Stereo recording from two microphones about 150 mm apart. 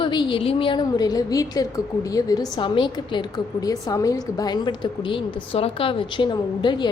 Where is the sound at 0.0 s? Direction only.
30° left (ahead or behind).